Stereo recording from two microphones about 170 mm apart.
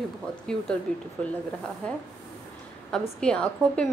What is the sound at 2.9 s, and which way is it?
Speech, 5° left (ahead or behind).